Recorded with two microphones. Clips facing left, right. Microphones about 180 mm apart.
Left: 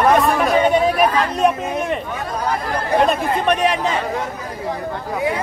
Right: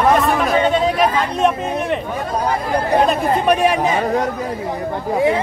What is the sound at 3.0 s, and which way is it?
Speech, 5° right (ahead or behind).